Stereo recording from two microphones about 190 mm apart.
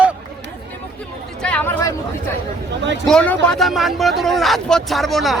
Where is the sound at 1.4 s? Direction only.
10° left (ahead or behind).